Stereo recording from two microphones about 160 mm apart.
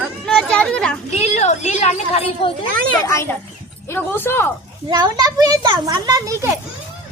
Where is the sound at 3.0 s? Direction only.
15° left (ahead or behind).